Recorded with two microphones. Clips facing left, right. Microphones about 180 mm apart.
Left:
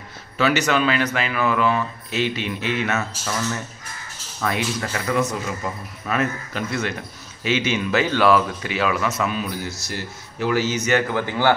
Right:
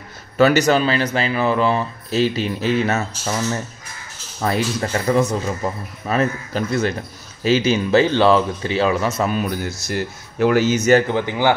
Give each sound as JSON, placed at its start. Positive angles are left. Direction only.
{"t": 0.4, "sound": "speech", "side_deg": -40}
{"t": 4.4, "sound": "speech", "side_deg": -30}
{"t": 9.3, "sound": "speech", "side_deg": -50}
{"t": 11.1, "sound": "speech", "side_deg": -20}